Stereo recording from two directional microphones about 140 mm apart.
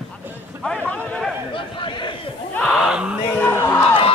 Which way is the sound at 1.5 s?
35° left (ahead or behind).